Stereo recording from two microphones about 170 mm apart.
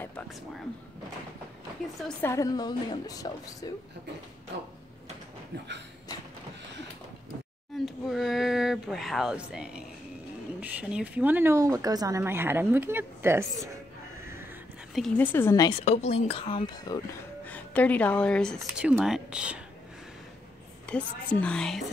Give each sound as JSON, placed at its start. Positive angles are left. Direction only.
{"t": 2.2, "sound": "a woman's voice", "side_deg": 20}
{"t": 4.5, "sound": "speech", "side_deg": -85}
{"t": 7.7, "sound": "speech", "side_deg": 0}
{"t": 15.0, "sound": "a woman's voice", "side_deg": 5}
{"t": 15.8, "sound": "speech", "side_deg": 40}
{"t": 17.5, "sound": "a woman's voice", "side_deg": 10}
{"t": 20.8, "sound": "speech", "side_deg": 5}